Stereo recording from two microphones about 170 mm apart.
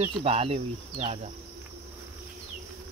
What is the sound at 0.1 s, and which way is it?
Speech, 35° right (ahead or behind).